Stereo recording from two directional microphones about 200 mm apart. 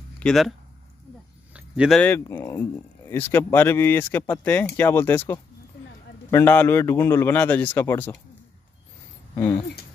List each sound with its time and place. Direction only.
0.2 s speech: centre (ahead or behind)
1.5 s a sound: 5° right (ahead or behind)
2.0 s speech: 10° left (ahead or behind)
9.3 s speech: 15° left (ahead or behind)